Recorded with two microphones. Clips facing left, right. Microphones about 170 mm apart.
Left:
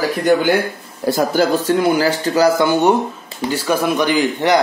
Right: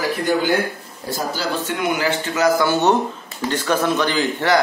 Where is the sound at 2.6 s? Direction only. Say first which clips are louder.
Left 3 dB; 15° left (ahead or behind).